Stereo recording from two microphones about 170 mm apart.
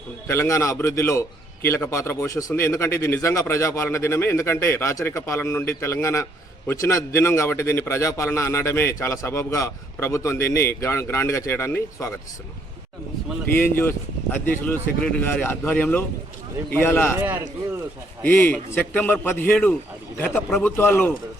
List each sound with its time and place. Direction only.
0.3 s a man's voice: 15° left (ahead or behind)
13.6 s a man's voice: 15° left (ahead or behind)
18.2 s a man's voice: 15° left (ahead or behind)